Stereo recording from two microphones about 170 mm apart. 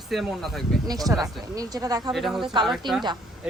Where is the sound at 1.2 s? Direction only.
20° right (ahead or behind).